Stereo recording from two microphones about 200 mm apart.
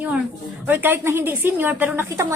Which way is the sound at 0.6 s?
10° right (ahead or behind).